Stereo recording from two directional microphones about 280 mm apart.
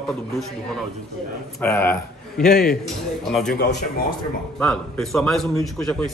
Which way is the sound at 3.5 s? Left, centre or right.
Left.